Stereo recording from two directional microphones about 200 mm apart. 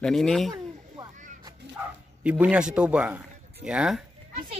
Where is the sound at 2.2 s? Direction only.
5° right (ahead or behind).